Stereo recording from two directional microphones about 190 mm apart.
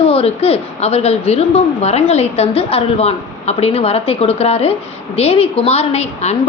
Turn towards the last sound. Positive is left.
turn(degrees=35)  # may be behind; listen again after turning